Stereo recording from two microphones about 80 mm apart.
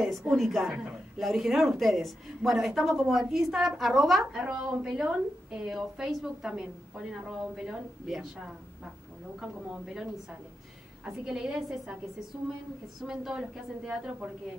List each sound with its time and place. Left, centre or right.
0.0 s a woman's voice: centre
11.1 s a woman's voice: centre
13.0 s a woman's voice: centre